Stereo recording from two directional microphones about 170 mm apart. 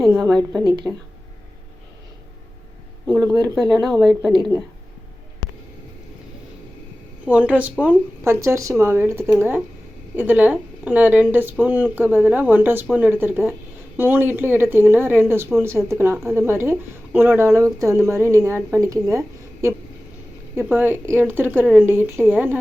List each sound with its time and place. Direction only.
0.0 s a woman's voice: centre (ahead or behind)
0.9 s a woman's voice: 10° right (ahead or behind)
3.2 s speech: 20° right (ahead or behind)
3.8 s speech: centre (ahead or behind)
7.3 s a woman's voice: 10° right (ahead or behind)